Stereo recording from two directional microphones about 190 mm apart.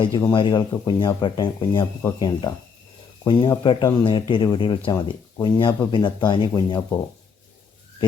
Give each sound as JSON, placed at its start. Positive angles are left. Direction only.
{"t": 0.0, "sound": "speech", "side_deg": 25}